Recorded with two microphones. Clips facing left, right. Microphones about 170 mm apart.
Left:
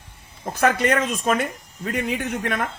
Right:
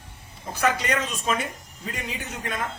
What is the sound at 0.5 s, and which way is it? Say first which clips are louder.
Speech: left 5 dB; 55° left (ahead or behind).